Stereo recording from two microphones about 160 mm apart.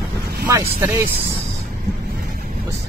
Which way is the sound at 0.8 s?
15° right (ahead or behind).